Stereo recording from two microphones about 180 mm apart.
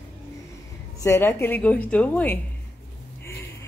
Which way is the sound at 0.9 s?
15° left (ahead or behind).